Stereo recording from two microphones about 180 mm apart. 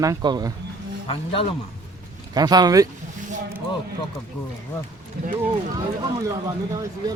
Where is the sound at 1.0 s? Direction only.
30° left (ahead or behind).